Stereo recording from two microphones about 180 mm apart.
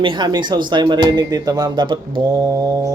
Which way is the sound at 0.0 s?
25° right (ahead or behind).